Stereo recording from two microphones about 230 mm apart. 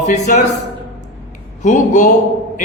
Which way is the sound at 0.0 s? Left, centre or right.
Left.